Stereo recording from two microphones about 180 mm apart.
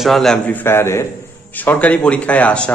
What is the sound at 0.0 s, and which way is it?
A man's voice, centre (ahead or behind).